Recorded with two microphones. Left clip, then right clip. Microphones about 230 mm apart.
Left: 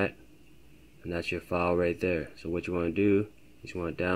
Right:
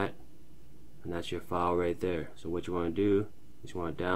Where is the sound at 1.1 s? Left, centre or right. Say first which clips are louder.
Left 3 dB; left.